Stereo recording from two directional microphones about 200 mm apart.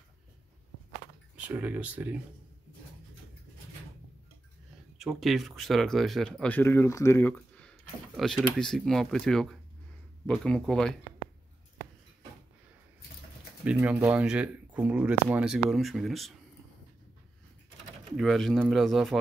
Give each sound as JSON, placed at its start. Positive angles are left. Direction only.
{"t": 1.3, "sound": "speech", "side_deg": -10}
{"t": 4.9, "sound": "speech", "side_deg": 0}
{"t": 13.7, "sound": "speech", "side_deg": -5}
{"t": 18.1, "sound": "speech", "side_deg": 0}